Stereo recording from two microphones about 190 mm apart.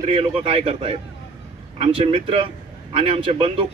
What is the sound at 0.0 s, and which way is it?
A man's voice, 30° right (ahead or behind).